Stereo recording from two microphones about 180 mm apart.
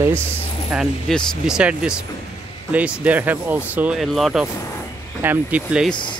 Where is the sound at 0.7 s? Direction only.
Centre (ahead or behind).